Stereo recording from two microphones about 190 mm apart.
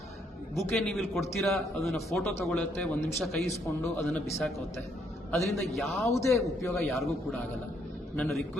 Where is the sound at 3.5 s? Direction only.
15° left (ahead or behind).